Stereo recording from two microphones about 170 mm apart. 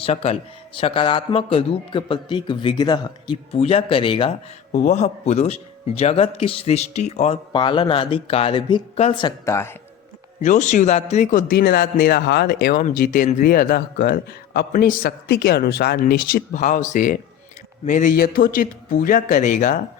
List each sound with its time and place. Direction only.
0.0 s speech: 35° left (ahead or behind)
4.7 s speech: 45° left (ahead or behind)
7.5 s speech: 30° left (ahead or behind)
9.2 s speech: 15° left (ahead or behind)
10.4 s speech: 45° left (ahead or behind); by 14.7 s 65° left (ahead or behind)
14.7 s speech: 55° left (ahead or behind)